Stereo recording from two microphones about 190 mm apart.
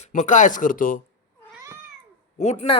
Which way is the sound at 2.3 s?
35° left (ahead or behind).